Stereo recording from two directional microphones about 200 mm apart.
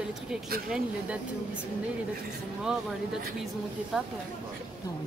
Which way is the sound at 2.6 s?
5° right (ahead or behind).